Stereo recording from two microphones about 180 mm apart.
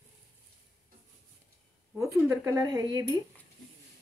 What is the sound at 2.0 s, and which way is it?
Speech, 15° right (ahead or behind).